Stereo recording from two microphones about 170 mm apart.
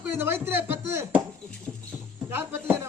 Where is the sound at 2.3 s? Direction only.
15° right (ahead or behind).